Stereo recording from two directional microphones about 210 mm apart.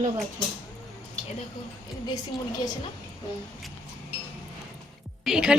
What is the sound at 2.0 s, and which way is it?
Speech, 20° left (ahead or behind).